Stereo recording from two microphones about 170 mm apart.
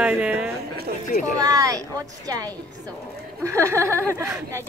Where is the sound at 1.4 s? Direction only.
20° right (ahead or behind).